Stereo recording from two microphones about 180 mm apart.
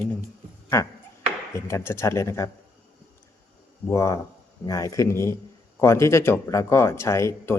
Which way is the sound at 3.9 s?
15° left (ahead or behind).